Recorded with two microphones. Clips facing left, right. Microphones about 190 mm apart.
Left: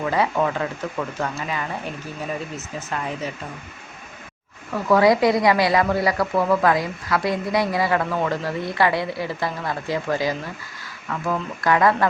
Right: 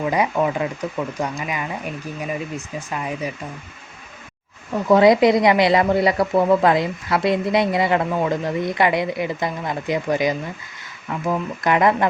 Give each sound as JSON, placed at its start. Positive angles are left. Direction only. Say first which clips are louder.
{"t": 0.0, "sound": "speech", "louder": "right 1 dB", "side_deg": -15}
{"t": 4.7, "sound": "a woman's voice", "louder": "right 3 dB", "side_deg": -20}